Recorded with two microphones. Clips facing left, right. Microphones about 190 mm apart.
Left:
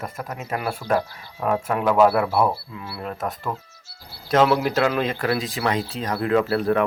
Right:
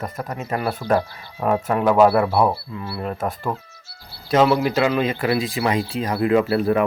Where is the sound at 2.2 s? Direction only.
30° right (ahead or behind).